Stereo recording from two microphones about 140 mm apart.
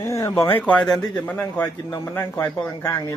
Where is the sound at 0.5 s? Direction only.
10° left (ahead or behind).